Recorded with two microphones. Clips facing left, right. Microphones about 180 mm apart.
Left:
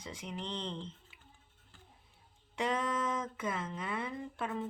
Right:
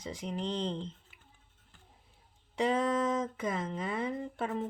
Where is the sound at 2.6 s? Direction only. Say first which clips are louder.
Right 5 dB; 35° right (ahead or behind).